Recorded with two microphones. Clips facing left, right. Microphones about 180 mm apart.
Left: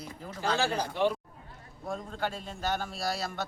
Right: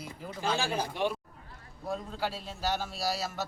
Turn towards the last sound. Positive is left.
turn(degrees=-5)  # may be behind; listen again after turning